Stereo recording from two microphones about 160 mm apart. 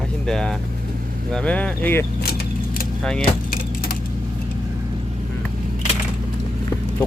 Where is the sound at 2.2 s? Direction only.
70° left (ahead or behind).